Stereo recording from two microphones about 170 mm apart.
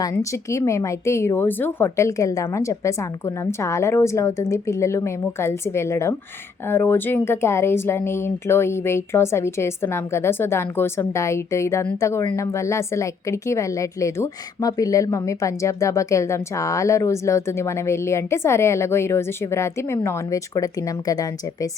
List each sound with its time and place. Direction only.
0.0 s speech: 20° left (ahead or behind)